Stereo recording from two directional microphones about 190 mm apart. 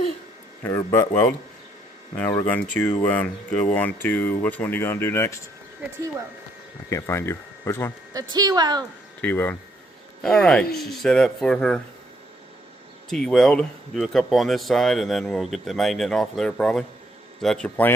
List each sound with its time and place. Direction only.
0.6 s speech: 15° left (ahead or behind)
6.9 s speech: 15° left (ahead or behind)
8.1 s speech: 20° right (ahead or behind)
9.2 s speech: 10° left (ahead or behind)
13.1 s speech: centre (ahead or behind)